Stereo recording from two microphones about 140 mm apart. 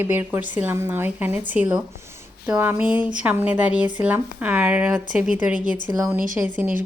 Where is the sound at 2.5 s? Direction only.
15° right (ahead or behind).